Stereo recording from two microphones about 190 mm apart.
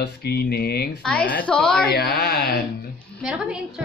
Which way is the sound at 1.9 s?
55° left (ahead or behind).